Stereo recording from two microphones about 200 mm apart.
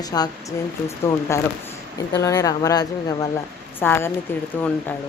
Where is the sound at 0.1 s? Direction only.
15° left (ahead or behind).